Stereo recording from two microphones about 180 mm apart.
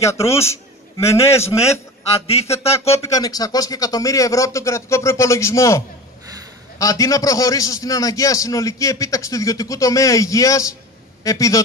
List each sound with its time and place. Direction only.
0.0 s a man's voice: 15° left (ahead or behind)
1.4 s speech: 35° left (ahead or behind)
3.0 s speech: 20° left (ahead or behind)
6.8 s a man's voice: 20° left (ahead or behind)